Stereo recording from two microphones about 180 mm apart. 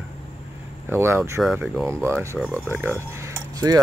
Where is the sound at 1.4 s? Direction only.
Centre (ahead or behind).